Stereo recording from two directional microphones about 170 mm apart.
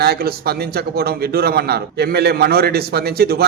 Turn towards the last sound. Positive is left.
turn(degrees=-65)  # may be behind; listen again after turning